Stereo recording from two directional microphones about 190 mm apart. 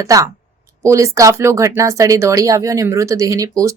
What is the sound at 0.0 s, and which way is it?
A man's voice, 15° right (ahead or behind).